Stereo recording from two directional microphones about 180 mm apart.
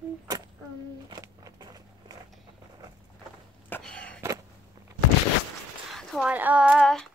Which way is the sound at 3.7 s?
5° left (ahead or behind).